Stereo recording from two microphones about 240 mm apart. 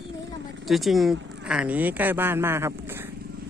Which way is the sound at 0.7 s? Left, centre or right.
Centre.